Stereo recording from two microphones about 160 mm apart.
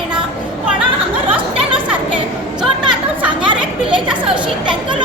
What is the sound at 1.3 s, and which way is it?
Chatter, 30° right (ahead or behind).